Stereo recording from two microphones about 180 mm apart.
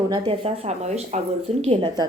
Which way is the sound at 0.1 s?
30° right (ahead or behind).